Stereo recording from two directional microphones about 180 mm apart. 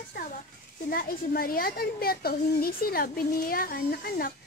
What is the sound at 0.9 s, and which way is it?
A woman's voice, 55° left (ahead or behind).